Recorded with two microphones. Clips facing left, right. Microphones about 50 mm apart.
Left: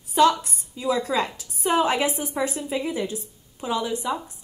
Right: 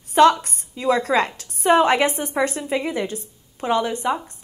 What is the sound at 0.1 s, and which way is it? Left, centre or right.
A woman's voice, right.